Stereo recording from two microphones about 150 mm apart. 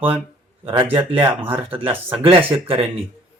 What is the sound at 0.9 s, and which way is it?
Speech, 35° right (ahead or behind).